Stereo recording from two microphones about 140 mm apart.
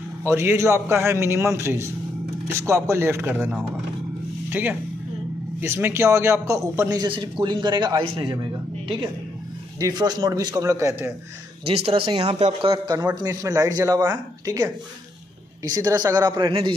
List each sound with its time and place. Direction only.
0.2 s a man's voice: 15° right (ahead or behind); by 8.4 s 35° right (ahead or behind)
9.8 s a man's voice: 30° right (ahead or behind)
11.6 s speech: 45° right (ahead or behind)
12.4 s a man's voice: 50° right (ahead or behind)
12.7 s a man's voice: 30° right (ahead or behind)
15.7 s a man's voice: 25° right (ahead or behind)